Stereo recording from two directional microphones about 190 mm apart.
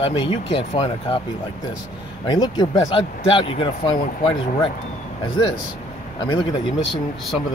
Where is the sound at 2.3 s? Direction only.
20° left (ahead or behind).